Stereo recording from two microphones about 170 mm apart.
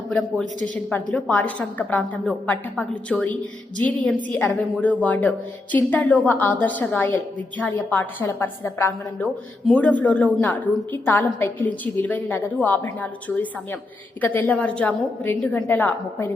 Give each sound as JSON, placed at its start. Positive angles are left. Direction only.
{"t": 0.1, "sound": "a woman's voice", "side_deg": 5}